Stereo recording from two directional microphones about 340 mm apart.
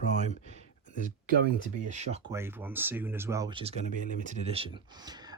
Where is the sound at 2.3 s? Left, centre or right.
Centre.